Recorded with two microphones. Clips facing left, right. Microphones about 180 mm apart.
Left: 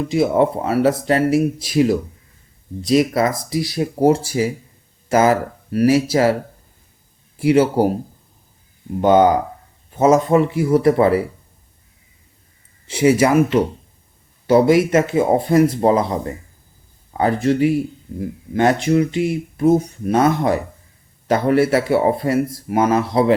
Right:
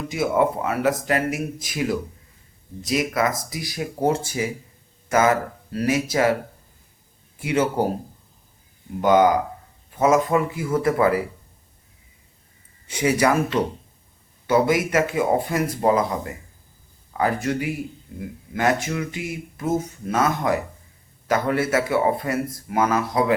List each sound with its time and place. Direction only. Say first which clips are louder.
0.1 s speech: left 4 dB; 30° left (ahead or behind)
7.4 s speech: left 7 dB; 30° left (ahead or behind)
9.0 s speech: left 4 dB; 30° left (ahead or behind)
12.9 s speech: left 6 dB; 25° left (ahead or behind)